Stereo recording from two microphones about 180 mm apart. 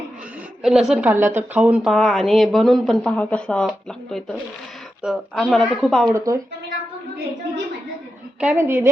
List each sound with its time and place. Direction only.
0.6 s speech: 5° right (ahead or behind)
6.1 s a woman's voice: 15° right (ahead or behind)
8.4 s a woman's voice: 10° right (ahead or behind)